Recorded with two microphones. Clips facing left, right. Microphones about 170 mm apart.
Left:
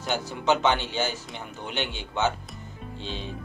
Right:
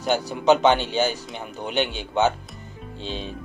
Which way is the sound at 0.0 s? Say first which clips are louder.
Right 6 dB; 15° right (ahead or behind).